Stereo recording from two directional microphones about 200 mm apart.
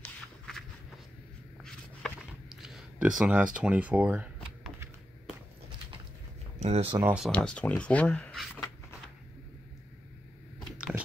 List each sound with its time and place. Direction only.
0.0 s walk: centre (ahead or behind)
1.6 s a sound: centre (ahead or behind)
3.5 s speech: 5° right (ahead or behind)
6.6 s speech: 30° right (ahead or behind)
7.0 s speech: 10° right (ahead or behind)
7.2 s speech: 5° left (ahead or behind)